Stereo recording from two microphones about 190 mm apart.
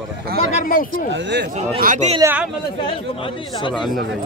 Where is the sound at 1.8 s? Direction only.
45° right (ahead or behind).